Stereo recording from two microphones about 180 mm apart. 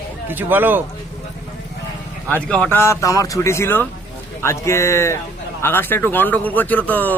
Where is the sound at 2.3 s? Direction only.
10° left (ahead or behind).